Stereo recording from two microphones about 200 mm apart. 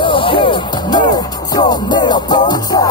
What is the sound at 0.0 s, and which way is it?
Music, 25° left (ahead or behind).